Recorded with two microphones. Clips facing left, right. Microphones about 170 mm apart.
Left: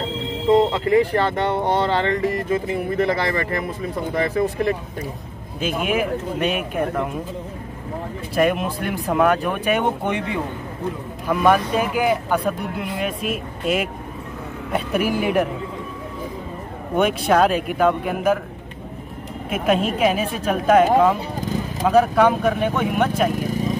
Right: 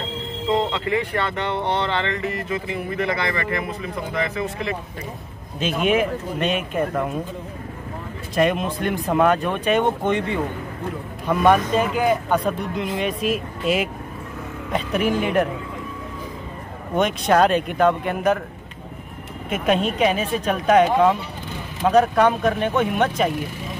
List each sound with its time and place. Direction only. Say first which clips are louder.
0.7 s speech: left 6 dB; 35° left (ahead or behind)
5.6 s speech: right 2 dB; 5° left (ahead or behind)
8.4 s speech: even; 10° left (ahead or behind)
16.9 s speech: left 1 dB; 5° left (ahead or behind)
19.5 s speech: left 1 dB; 5° left (ahead or behind)
21.4 s vehicle: left 8 dB; 40° left (ahead or behind)
21.8 s speech: even; 5° left (ahead or behind)